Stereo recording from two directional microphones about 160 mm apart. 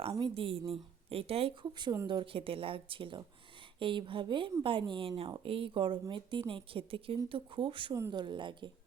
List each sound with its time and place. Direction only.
0.3 s a woman's voice: 35° right (ahead or behind)